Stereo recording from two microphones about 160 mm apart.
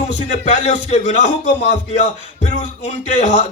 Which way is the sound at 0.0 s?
45° left (ahead or behind).